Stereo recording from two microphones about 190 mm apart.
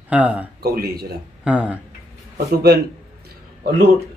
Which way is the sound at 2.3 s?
55° right (ahead or behind).